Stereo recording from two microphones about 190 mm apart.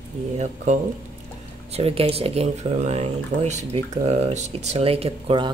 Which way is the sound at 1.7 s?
30° right (ahead or behind).